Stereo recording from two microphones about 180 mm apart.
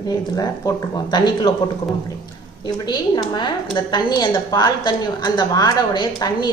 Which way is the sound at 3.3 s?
25° left (ahead or behind).